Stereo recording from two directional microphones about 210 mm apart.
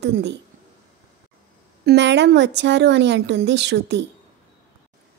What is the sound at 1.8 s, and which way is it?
Speech, 55° right (ahead or behind).